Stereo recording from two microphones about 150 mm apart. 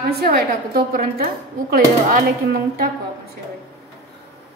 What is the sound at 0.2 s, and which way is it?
A woman's voice, 90° right.